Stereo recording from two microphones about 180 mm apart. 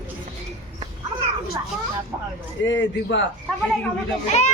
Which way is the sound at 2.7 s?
90° left.